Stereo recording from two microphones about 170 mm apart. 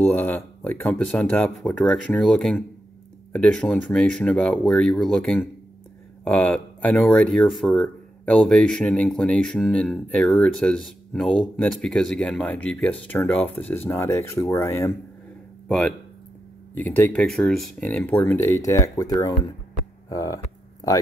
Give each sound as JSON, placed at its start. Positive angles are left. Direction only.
{"t": 0.0, "sound": "speech", "side_deg": 10}
{"t": 16.7, "sound": "speech", "side_deg": 10}